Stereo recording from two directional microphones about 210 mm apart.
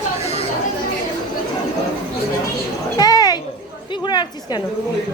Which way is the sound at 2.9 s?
20° left (ahead or behind).